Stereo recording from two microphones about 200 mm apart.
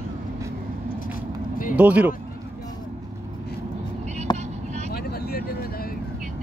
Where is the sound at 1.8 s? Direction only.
5° right (ahead or behind).